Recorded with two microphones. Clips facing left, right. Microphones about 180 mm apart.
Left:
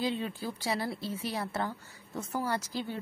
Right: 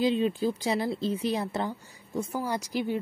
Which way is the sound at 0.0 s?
20° right (ahead or behind).